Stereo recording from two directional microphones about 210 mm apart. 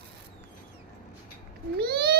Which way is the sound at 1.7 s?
50° right (ahead or behind).